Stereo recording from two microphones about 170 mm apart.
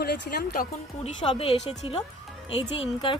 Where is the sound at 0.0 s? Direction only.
70° left (ahead or behind).